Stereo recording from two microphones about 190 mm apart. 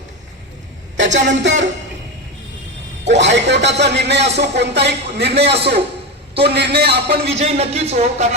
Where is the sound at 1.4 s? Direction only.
75° right (ahead or behind).